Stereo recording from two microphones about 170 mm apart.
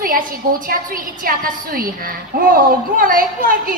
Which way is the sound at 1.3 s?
55° right (ahead or behind).